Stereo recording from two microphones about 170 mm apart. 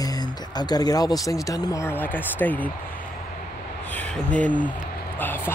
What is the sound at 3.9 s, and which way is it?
Speech, 10° left (ahead or behind).